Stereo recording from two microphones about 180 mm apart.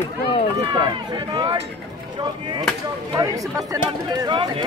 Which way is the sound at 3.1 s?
20° right (ahead or behind).